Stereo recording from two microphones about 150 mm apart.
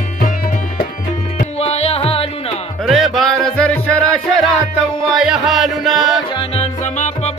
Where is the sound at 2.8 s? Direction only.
Centre (ahead or behind).